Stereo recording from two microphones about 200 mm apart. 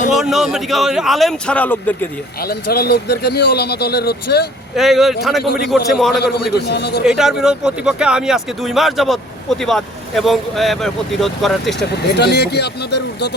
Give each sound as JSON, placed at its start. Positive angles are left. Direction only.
{"t": 0.1, "sound": "speech", "side_deg": 0}
{"t": 2.4, "sound": "a man's voice", "side_deg": 50}
{"t": 4.7, "sound": "speech", "side_deg": 0}
{"t": 6.2, "sound": "speech", "side_deg": 55}
{"t": 7.0, "sound": "speech", "side_deg": -5}
{"t": 11.9, "sound": "speech", "side_deg": 55}